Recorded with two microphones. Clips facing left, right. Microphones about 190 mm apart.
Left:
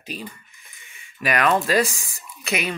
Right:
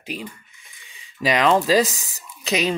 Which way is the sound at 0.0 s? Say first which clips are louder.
Right 2 dB; 15° right (ahead or behind).